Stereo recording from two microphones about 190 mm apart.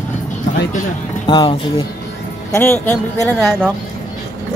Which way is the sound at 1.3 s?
25° left (ahead or behind).